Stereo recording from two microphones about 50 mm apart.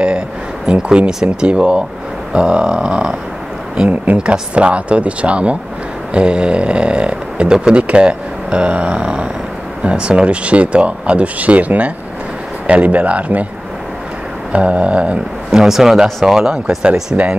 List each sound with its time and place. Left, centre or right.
0.7 s speech: centre
3.9 s speech: right
14.5 s speech: right
15.5 s speech: centre
17.1 s speech: right